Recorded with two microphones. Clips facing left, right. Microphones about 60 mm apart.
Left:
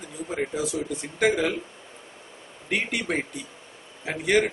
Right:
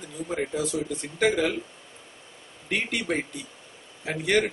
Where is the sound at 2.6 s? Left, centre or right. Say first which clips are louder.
Left 1 dB; centre.